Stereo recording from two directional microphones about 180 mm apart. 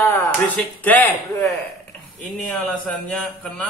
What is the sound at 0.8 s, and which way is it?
Speech, 10° left (ahead or behind).